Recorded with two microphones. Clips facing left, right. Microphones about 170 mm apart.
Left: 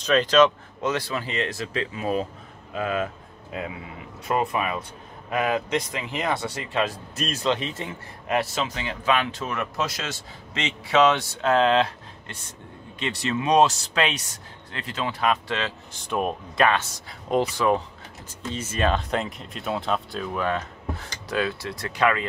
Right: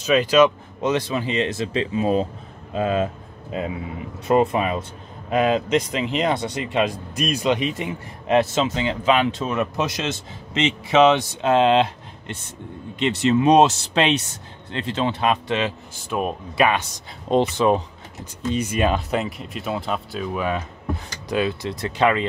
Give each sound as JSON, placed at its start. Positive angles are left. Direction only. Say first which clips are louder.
{"t": 0.0, "sound": "speech", "louder": "right 2 dB", "side_deg": -10}
{"t": 15.9, "sound": "speech", "louder": "right 1 dB", "side_deg": -5}